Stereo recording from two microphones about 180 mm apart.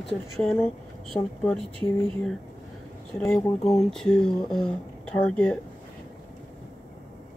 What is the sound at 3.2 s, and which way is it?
Speech, centre (ahead or behind).